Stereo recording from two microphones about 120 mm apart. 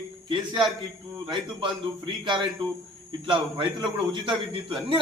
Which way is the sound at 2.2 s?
40° right (ahead or behind).